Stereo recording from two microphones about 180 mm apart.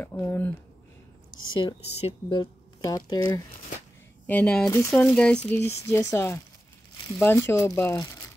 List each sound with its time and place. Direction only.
0.0 s speech: 15° left (ahead or behind)
1.5 s speech: 25° left (ahead or behind)
4.3 s speech: 5° left (ahead or behind)
5.9 s speech: 15° left (ahead or behind)